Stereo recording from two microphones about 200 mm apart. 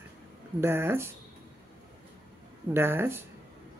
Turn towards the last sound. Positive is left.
turn(degrees=-10)  # may be behind; listen again after turning